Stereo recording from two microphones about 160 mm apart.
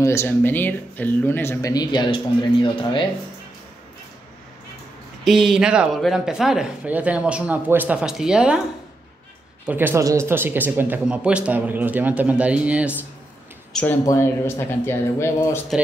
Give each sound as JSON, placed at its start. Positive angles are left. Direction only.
{"t": 0.0, "sound": "speech", "side_deg": 15}
{"t": 5.2, "sound": "speech", "side_deg": 0}
{"t": 9.7, "sound": "speech", "side_deg": -15}
{"t": 14.0, "sound": "speech", "side_deg": 15}